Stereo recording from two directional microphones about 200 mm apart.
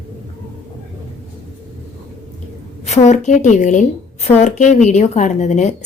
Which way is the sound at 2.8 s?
35° left (ahead or behind).